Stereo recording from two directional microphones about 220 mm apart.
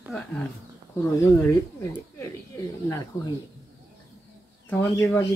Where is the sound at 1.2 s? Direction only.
15° left (ahead or behind).